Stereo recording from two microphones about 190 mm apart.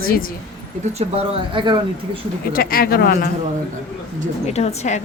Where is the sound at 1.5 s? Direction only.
25° right (ahead or behind).